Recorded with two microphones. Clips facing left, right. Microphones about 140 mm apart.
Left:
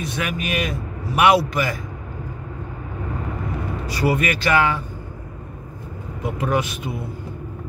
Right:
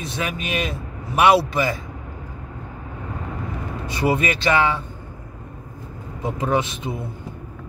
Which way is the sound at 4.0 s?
25° right (ahead or behind).